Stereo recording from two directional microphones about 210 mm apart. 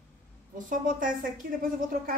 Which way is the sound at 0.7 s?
40° right (ahead or behind).